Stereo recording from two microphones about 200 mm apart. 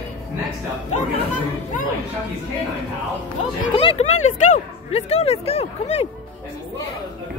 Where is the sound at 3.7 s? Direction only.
30° left (ahead or behind).